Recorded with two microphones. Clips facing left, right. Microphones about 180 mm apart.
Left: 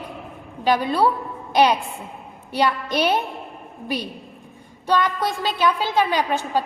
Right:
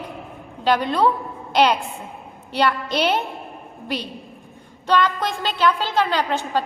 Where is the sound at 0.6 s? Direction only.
10° left (ahead or behind).